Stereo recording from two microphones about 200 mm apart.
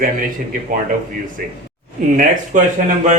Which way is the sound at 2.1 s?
40° right (ahead or behind).